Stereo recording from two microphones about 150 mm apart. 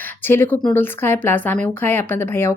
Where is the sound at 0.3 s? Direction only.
15° left (ahead or behind).